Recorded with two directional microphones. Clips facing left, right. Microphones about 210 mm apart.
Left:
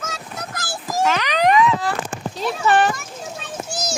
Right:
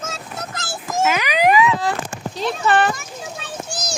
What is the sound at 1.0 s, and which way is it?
Speech, 10° right (ahead or behind).